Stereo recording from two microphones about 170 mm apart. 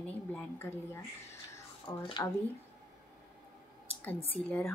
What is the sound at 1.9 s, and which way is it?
Speech, 15° left (ahead or behind).